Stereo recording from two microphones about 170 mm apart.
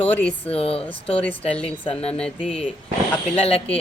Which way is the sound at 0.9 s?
5° left (ahead or behind).